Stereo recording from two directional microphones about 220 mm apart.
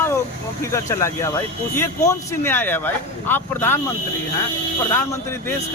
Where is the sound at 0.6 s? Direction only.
15° left (ahead or behind).